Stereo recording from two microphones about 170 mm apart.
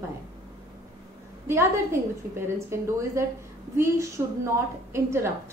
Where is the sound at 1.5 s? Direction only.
15° right (ahead or behind).